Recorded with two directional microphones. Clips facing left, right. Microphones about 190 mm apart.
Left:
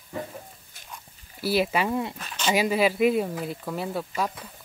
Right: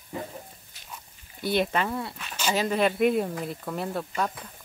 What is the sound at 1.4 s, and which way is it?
Speech, 5° left (ahead or behind).